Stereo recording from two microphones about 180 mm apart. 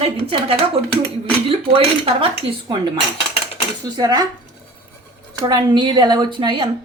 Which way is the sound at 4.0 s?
20° right (ahead or behind).